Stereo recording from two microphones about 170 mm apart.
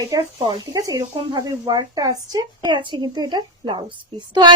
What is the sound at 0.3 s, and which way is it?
A woman's voice, 25° right (ahead or behind).